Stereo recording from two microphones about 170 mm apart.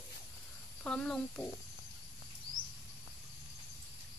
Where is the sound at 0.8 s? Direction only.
5° left (ahead or behind).